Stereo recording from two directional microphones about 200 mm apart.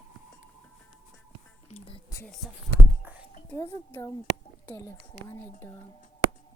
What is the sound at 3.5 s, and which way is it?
A woman's voice, 15° left (ahead or behind).